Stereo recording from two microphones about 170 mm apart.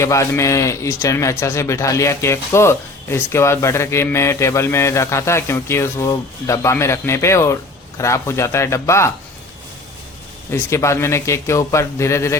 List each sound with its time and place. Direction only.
0.0 s a man's voice: 15° left (ahead or behind)
10.5 s a man's voice: 15° left (ahead or behind)